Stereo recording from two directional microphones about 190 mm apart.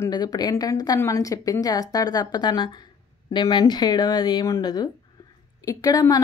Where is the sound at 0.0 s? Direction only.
20° left (ahead or behind).